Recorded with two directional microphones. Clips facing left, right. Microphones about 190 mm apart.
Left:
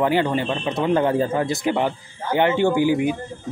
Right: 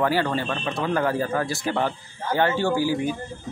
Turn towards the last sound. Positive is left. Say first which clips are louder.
# left 5 dB
turn(degrees=20)  # may be behind; listen again after turning